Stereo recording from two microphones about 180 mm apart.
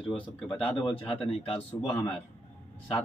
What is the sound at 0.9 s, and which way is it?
Speech, 30° left (ahead or behind).